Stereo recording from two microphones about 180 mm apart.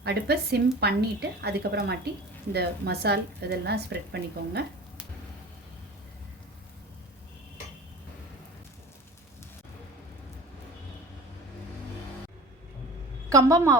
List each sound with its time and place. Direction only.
0.0 s a woman's voice: 65° right (ahead or behind)
13.3 s a woman's voice: 20° right (ahead or behind)